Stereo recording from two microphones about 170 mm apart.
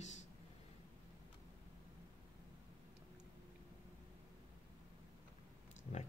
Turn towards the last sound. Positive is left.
turn(degrees=40)  # may be behind; listen again after turning